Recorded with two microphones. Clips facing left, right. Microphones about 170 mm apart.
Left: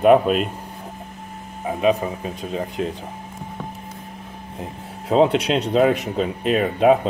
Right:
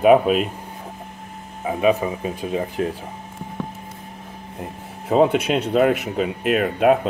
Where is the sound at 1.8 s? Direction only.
5° right (ahead or behind).